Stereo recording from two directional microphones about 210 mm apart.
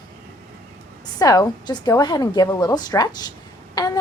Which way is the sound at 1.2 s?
15° left (ahead or behind).